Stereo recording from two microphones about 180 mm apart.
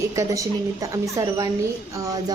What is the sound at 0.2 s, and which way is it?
A woman's voice, 20° right (ahead or behind).